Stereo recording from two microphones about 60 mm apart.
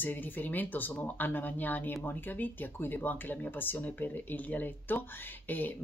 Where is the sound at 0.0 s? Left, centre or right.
Left.